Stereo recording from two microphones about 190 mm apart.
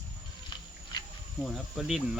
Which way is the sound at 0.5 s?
25° left (ahead or behind).